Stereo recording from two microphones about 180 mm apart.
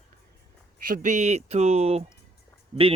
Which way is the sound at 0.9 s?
45° right (ahead or behind).